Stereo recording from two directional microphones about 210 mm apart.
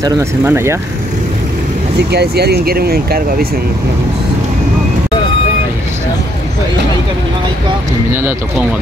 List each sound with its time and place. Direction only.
0.0 s speech: 15° right (ahead or behind)
2.0 s speech: 50° right (ahead or behind)
8.1 s speech: 10° right (ahead or behind)